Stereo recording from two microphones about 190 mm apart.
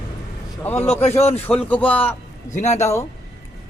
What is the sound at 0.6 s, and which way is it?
Speech, 10° left (ahead or behind).